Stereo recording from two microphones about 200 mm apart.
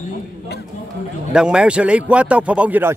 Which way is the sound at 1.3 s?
5° right (ahead or behind).